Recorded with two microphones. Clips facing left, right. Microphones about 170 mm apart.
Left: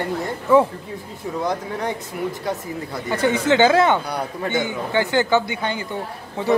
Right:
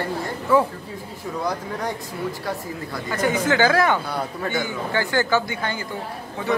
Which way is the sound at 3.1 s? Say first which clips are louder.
Left 3 dB; 25° left (ahead or behind).